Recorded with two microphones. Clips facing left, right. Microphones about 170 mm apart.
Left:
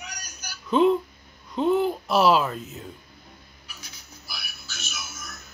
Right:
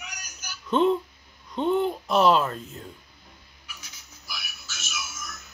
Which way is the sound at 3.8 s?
35° left (ahead or behind).